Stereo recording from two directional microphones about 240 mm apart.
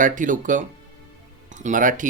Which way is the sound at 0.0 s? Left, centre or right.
Right.